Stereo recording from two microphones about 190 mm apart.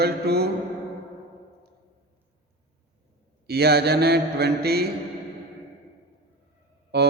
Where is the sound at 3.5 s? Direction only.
55° right (ahead or behind).